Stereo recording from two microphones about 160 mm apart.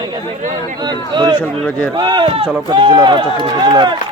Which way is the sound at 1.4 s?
10° left (ahead or behind).